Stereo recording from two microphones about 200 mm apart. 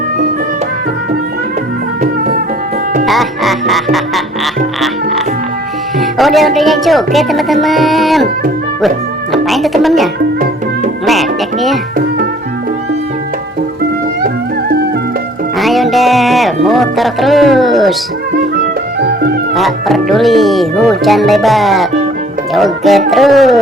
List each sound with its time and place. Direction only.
3.1 s music: centre (ahead or behind)
6.0 s speech: centre (ahead or behind)
9.3 s music: centre (ahead or behind)
15.5 s speech: centre (ahead or behind)
18.6 s music: 55° right (ahead or behind)
19.5 s speech: centre (ahead or behind)